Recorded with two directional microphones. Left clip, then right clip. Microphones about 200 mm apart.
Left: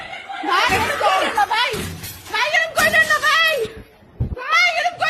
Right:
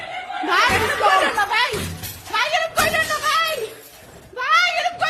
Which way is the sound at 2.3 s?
Centre (ahead or behind).